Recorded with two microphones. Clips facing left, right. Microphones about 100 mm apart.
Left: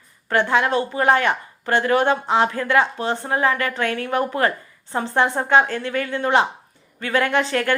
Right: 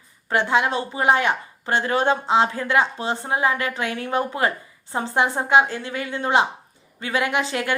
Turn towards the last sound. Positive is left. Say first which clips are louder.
# left 3 dB
turn(degrees=-15)  # may be behind; listen again after turning